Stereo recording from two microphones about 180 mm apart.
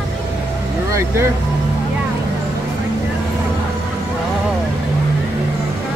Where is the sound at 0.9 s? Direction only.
15° right (ahead or behind).